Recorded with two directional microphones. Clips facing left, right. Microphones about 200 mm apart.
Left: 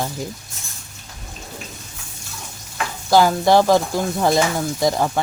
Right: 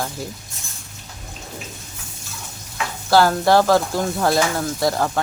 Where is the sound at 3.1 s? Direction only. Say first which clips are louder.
Left 1 dB; 15° left (ahead or behind).